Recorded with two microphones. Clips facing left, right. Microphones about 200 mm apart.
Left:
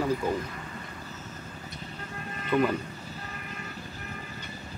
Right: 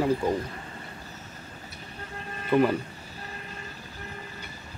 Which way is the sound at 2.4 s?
25° right (ahead or behind).